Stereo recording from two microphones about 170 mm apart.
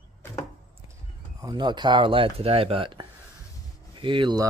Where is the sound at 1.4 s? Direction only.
25° right (ahead or behind).